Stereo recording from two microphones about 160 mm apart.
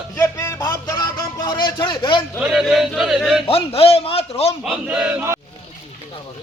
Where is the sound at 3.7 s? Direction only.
40° left (ahead or behind).